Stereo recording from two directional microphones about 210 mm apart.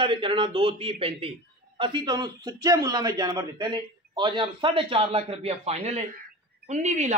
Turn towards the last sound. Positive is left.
turn(degrees=-35)  # may be behind; listen again after turning